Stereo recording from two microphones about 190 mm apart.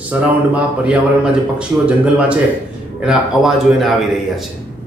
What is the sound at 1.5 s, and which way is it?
A man's voice, 5° right (ahead or behind).